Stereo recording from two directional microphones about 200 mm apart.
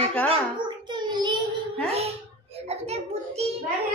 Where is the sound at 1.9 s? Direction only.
30° right (ahead or behind).